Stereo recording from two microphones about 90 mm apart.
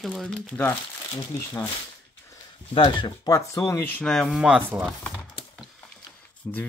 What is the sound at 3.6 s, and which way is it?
Speech, 25° left (ahead or behind).